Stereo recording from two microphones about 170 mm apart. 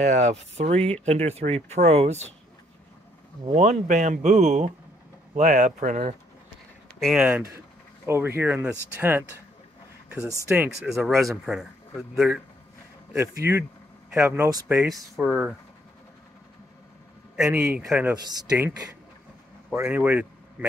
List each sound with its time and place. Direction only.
0.0 s speech: 45° right (ahead or behind)
3.4 s speech: 40° right (ahead or behind)
7.0 s a man's voice: centre (ahead or behind)
10.5 s speech: 10° right (ahead or behind)
11.1 s a man's voice: centre (ahead or behind)
13.2 s a man's voice: 15° right (ahead or behind)
17.6 s a man's voice: 5° right (ahead or behind)
18.1 s speech: 25° right (ahead or behind)
19.7 s speech: 10° right (ahead or behind)